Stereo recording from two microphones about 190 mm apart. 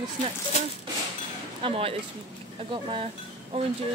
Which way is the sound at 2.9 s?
35° right (ahead or behind).